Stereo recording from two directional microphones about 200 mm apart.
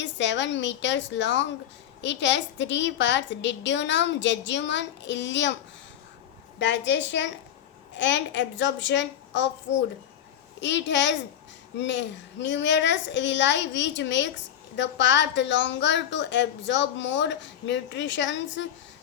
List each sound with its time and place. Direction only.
0.0 s a child's voice: 65° left (ahead or behind)
6.6 s a child's voice: 60° left (ahead or behind)
10.6 s a child's voice: 65° left (ahead or behind)